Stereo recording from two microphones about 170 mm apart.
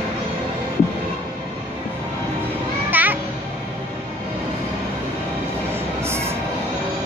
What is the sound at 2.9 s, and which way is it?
Music, 10° right (ahead or behind).